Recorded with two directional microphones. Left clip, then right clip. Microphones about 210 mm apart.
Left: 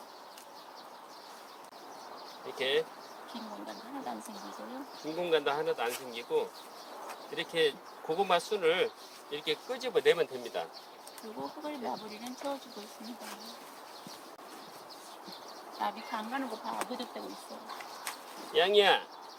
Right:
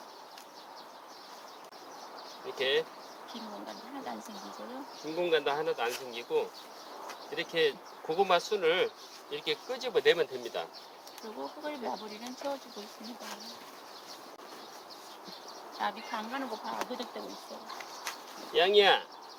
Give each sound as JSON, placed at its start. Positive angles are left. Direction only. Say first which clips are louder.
{"t": 2.6, "sound": "speech", "louder": "right 1 dB", "side_deg": -20}
{"t": 5.2, "sound": "speech", "louder": "right 1 dB", "side_deg": -20}
{"t": 15.8, "sound": "speech", "louder": "right 1 dB", "side_deg": -10}
{"t": 18.5, "sound": "speech", "louder": "right 1 dB", "side_deg": -20}